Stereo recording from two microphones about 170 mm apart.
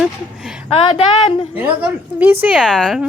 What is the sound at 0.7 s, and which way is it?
Speech, 35° left (ahead or behind).